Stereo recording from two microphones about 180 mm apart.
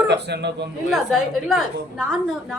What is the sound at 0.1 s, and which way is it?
Speech, 70° right (ahead or behind).